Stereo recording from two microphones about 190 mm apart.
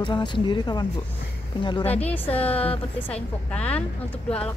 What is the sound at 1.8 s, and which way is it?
A woman's voice, 10° left (ahead or behind).